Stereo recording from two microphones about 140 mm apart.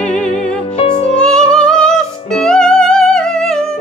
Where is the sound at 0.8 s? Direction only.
45° left (ahead or behind).